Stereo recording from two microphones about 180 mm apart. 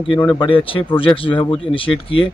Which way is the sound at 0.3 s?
25° left (ahead or behind).